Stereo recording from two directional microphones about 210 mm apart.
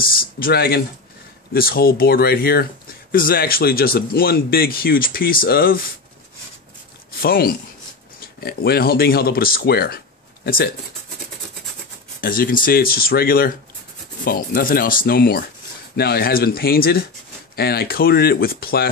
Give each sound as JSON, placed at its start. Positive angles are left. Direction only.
{"t": 0.0, "sound": "speech", "side_deg": 45}
{"t": 7.1, "sound": "speech", "side_deg": 45}
{"t": 12.2, "sound": "speech", "side_deg": 40}